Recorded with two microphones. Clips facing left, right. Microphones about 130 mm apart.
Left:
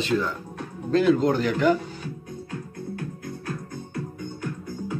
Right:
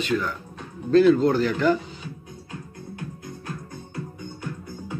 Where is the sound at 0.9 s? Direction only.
15° left (ahead or behind).